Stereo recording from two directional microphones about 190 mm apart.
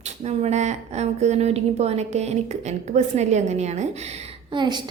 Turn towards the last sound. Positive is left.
turn(degrees=-25)  # may be behind; listen again after turning